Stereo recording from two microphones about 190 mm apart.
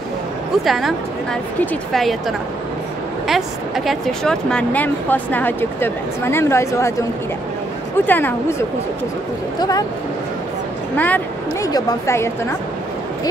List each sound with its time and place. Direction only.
0.7 s a woman's voice: centre (ahead or behind); by 6.9 s 15° left (ahead or behind)
8.1 s speech: 10° left (ahead or behind)
11.0 s speech: 10° left (ahead or behind)